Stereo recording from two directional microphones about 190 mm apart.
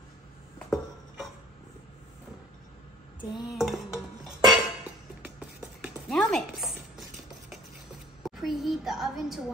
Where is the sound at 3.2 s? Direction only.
25° left (ahead or behind).